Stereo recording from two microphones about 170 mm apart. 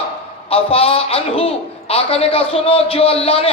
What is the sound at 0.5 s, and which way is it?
A man's voice, 35° left (ahead or behind).